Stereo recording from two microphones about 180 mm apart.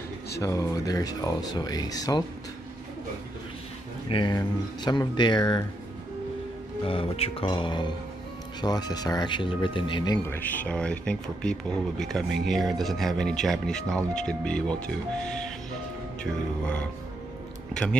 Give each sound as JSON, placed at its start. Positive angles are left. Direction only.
{"t": 0.4, "sound": "speech", "side_deg": 15}
{"t": 4.1, "sound": "speech", "side_deg": 25}
{"t": 6.8, "sound": "speech", "side_deg": 30}
{"t": 10.2, "sound": "speech", "side_deg": 10}